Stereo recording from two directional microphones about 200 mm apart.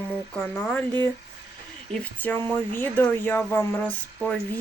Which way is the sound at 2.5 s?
10° left (ahead or behind).